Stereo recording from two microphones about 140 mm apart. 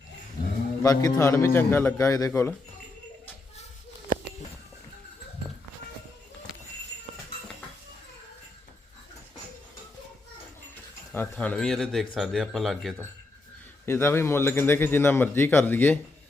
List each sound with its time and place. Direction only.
0.8 s speech: 25° left (ahead or behind)
11.1 s speech: 10° left (ahead or behind)
13.8 s a man's voice: 15° left (ahead or behind)